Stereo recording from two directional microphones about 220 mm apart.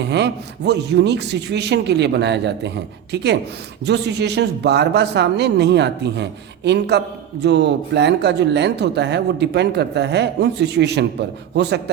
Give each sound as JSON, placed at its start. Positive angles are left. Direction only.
{"t": 0.0, "sound": "speech", "side_deg": -50}